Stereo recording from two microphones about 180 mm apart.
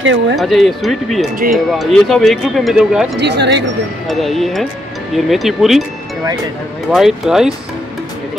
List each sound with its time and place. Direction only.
0.0 s speech: 85° right
0.4 s speech: centre (ahead or behind)
3.2 s speech: 70° right (ahead or behind)
4.1 s speech: centre (ahead or behind)
6.9 s speech: centre (ahead or behind)